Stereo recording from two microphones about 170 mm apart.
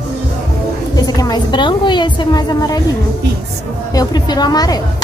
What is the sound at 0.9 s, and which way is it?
A woman's voice, 20° left (ahead or behind).